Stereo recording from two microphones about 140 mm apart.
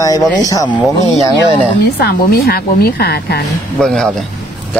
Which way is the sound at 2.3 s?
90° left.